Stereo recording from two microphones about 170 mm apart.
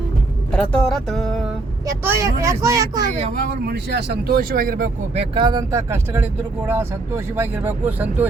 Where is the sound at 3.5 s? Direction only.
70° right (ahead or behind).